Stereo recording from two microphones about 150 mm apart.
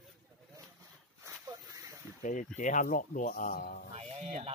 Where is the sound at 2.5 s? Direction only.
55° left (ahead or behind).